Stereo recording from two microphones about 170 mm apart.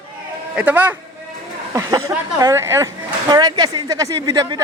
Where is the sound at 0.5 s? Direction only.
10° right (ahead or behind).